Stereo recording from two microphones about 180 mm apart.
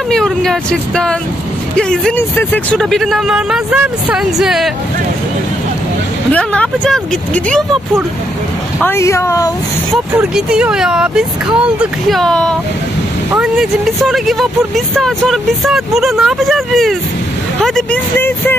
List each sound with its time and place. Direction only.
0.1 s speech: centre (ahead or behind)
6.3 s speech: 5° left (ahead or behind)
8.8 s speech: 15° left (ahead or behind)
10.1 s speech: 5° right (ahead or behind)
18.1 s speech: 10° left (ahead or behind)